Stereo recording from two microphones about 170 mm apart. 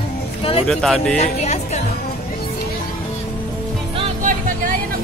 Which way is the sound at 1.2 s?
40° left (ahead or behind).